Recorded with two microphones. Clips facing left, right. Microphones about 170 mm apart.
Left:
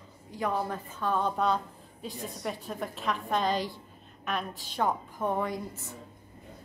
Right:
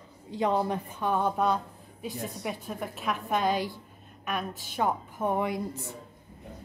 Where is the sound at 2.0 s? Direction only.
5° right (ahead or behind).